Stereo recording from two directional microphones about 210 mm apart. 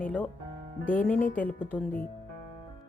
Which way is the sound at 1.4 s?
10° left (ahead or behind).